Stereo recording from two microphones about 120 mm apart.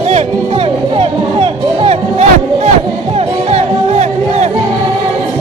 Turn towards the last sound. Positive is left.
turn(degrees=-65)  # may be behind; listen again after turning